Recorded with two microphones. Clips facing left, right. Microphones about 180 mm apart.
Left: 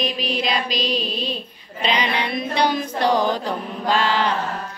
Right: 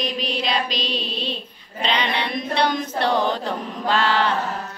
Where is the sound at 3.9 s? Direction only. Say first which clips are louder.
Even; 15° left (ahead or behind).